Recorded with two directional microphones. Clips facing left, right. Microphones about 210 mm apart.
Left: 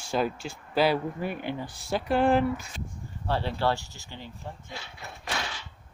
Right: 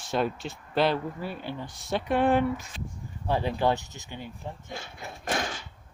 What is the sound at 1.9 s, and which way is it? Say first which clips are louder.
Speech: even; centre (ahead or behind).